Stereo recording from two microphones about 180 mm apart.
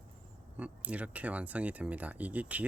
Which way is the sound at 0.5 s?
10° right (ahead or behind).